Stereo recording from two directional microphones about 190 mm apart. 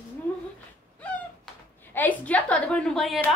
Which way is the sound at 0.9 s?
5° left (ahead or behind).